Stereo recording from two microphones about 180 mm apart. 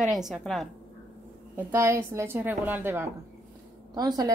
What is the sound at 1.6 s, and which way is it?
A woman's voice, 15° right (ahead or behind).